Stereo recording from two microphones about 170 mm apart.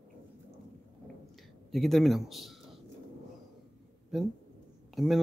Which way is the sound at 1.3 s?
Centre (ahead or behind).